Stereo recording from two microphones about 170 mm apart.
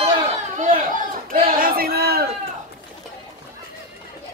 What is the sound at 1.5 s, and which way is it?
Crowd, 60° right (ahead or behind).